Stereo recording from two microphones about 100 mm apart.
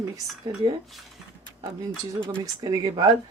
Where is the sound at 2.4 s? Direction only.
40° right (ahead or behind).